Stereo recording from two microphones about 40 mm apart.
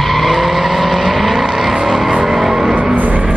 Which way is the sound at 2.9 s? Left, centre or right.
Right.